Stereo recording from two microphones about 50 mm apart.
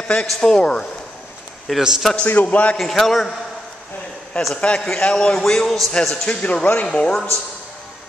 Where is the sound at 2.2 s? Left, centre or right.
Left.